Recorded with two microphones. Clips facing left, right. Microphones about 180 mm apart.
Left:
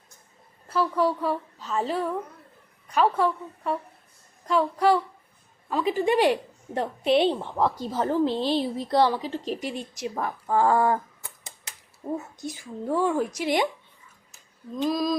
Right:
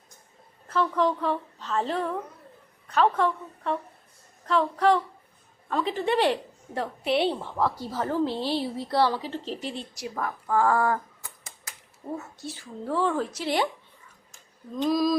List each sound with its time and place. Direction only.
0.7 s a woman's voice: 10° left (ahead or behind)
14.3 s female singing: 5° left (ahead or behind)